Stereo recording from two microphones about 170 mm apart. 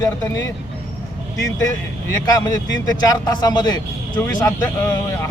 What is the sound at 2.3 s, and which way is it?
Speech, 25° left (ahead or behind).